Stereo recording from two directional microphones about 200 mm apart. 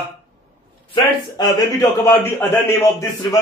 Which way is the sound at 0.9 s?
20° left (ahead or behind).